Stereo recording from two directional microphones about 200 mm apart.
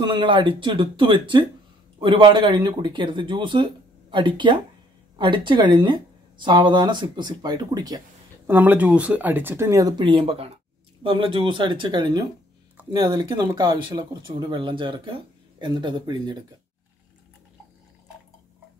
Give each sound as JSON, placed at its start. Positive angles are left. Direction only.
{"t": 0.0, "sound": "speech", "side_deg": -25}